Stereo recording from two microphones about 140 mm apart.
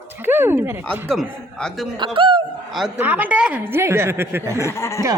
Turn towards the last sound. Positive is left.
turn(degrees=20)  # may be behind; listen again after turning